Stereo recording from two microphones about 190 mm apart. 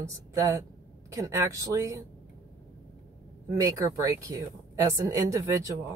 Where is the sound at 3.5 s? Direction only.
15° right (ahead or behind).